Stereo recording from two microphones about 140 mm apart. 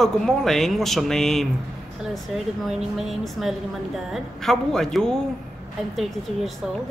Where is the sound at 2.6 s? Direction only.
Centre (ahead or behind).